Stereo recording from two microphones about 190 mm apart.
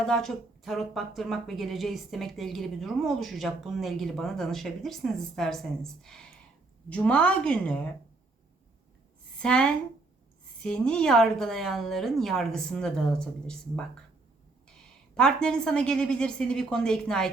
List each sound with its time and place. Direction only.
0.0 s a woman's voice: centre (ahead or behind)
9.4 s a woman's voice: 5° left (ahead or behind)
15.1 s a woman's voice: 5° left (ahead or behind)